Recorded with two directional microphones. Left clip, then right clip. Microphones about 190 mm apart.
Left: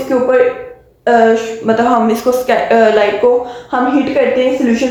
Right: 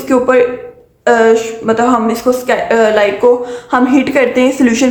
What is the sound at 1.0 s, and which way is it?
Speech, 30° right (ahead or behind).